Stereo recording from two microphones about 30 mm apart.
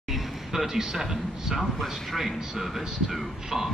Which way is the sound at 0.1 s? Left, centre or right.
Centre.